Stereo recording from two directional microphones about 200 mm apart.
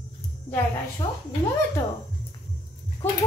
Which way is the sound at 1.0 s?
25° left (ahead or behind).